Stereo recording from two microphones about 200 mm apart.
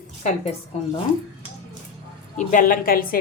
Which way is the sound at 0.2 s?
35° left (ahead or behind).